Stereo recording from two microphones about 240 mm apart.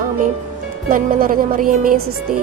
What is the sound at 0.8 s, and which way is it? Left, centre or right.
A woman's voice, right.